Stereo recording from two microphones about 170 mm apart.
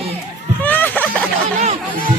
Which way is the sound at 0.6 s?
10° left (ahead or behind).